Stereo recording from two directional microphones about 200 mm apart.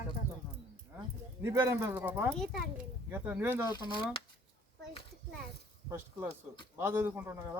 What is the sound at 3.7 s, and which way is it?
Speech, 20° left (ahead or behind).